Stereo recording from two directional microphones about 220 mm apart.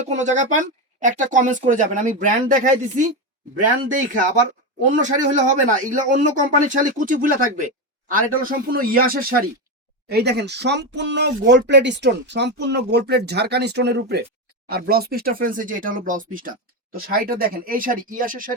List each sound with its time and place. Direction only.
0.0 s speech: 30° right (ahead or behind)